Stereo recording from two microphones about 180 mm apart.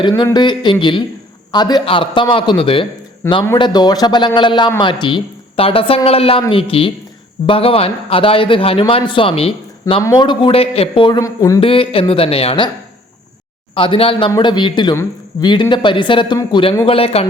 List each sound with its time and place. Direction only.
0.0 s a man's voice: 25° left (ahead or behind)
3.2 s speech: 15° left (ahead or behind)
3.6 s a man's voice: 25° left (ahead or behind)
10.0 s a man's voice: 20° left (ahead or behind)
11.6 s a woman's voice: 30° left (ahead or behind)
13.7 s a man's voice: 30° left (ahead or behind)